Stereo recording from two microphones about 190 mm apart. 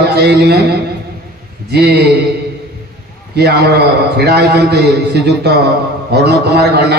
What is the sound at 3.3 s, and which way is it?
A man's voice, 60° right (ahead or behind).